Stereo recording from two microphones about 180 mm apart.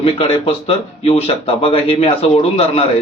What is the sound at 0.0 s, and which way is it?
Speech, 35° left (ahead or behind).